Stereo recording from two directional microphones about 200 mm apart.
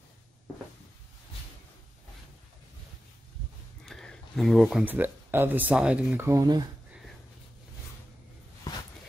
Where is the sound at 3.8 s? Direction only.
5° left (ahead or behind); by 6.6 s 20° right (ahead or behind).